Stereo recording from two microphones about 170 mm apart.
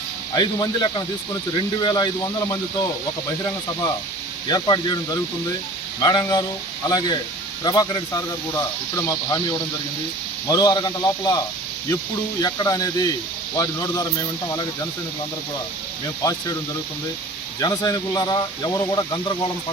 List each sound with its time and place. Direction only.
0.3 s speech: 25° left (ahead or behind)
4.4 s speech: 25° left (ahead or behind)
16.2 s speech: 20° left (ahead or behind)
17.6 s speech: 20° left (ahead or behind)